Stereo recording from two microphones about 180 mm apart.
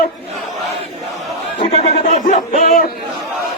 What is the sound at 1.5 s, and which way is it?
Crowd, 35° left (ahead or behind).